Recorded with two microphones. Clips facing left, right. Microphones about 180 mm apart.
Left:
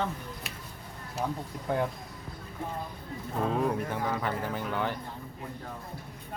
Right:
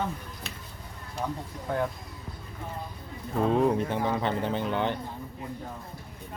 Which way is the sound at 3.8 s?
25° right (ahead or behind).